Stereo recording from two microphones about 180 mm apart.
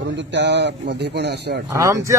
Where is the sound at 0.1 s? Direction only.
80° right.